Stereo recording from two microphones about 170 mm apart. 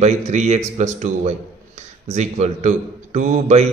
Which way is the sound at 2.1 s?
40° right (ahead or behind).